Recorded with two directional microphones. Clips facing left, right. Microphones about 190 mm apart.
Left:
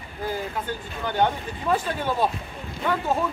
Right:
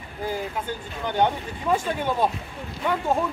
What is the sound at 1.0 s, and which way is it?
Speech, 15° right (ahead or behind).